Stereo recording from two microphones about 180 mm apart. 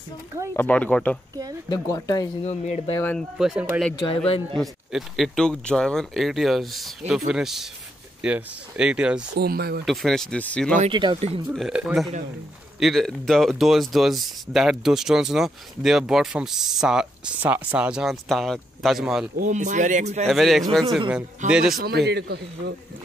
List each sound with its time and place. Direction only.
0.5 s speech: 10° left (ahead or behind)
1.7 s speech: 20° left (ahead or behind)
2.4 s speech: 40° left (ahead or behind)
3.0 s speech: 10° left (ahead or behind)
3.3 s speech: centre (ahead or behind)
9.4 s a man's voice: 60° right (ahead or behind)
9.8 s speech: centre (ahead or behind)
10.9 s speech: 25° right (ahead or behind)
11.4 s speech: centre (ahead or behind)
19.3 s speech: 45° right (ahead or behind)
20.2 s speech: centre (ahead or behind)
21.7 s a man's voice: 60° right (ahead or behind)